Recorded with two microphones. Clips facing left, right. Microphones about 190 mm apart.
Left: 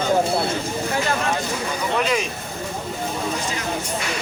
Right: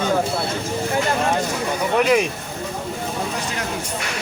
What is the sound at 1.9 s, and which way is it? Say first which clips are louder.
Speech: right 6 dB; 60° right (ahead or behind).